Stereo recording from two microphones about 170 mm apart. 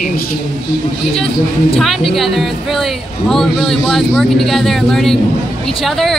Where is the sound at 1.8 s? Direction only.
Centre (ahead or behind).